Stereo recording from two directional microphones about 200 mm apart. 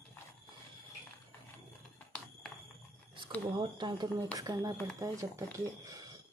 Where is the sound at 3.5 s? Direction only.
20° right (ahead or behind).